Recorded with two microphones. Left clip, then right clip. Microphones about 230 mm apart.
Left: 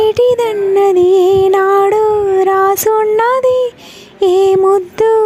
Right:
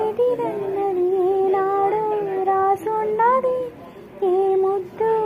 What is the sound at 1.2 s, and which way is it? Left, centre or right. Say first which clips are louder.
Music: left 9 dB; left.